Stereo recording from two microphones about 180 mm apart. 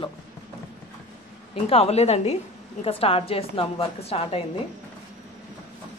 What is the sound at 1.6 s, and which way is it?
A woman's voice, 35° left (ahead or behind).